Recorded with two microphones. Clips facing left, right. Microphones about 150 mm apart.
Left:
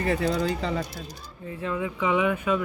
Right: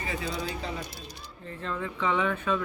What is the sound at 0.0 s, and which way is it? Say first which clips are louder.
Speech: left 8 dB; 65° left (ahead or behind).